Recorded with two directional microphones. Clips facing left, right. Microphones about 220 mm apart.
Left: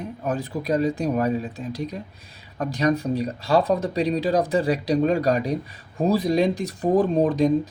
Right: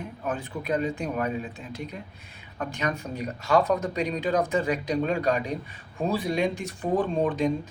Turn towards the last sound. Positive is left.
turn(degrees=40)  # may be behind; listen again after turning